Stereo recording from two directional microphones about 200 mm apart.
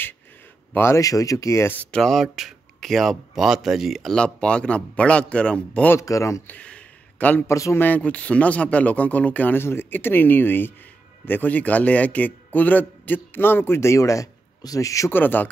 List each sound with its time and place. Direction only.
0.7 s speech: 15° left (ahead or behind)